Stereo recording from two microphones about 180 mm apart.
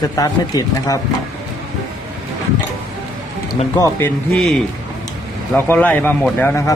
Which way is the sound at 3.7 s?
20° left (ahead or behind).